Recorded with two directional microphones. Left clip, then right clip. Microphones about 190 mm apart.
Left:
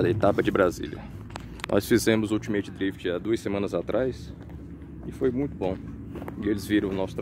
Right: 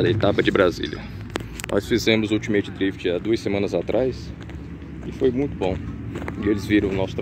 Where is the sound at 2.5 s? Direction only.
Centre (ahead or behind).